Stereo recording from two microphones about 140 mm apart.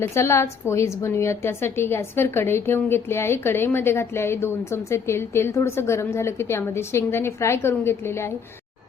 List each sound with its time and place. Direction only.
0.0 s a woman's voice: 20° left (ahead or behind)